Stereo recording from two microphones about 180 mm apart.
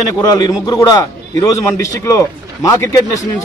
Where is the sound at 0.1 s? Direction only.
20° left (ahead or behind).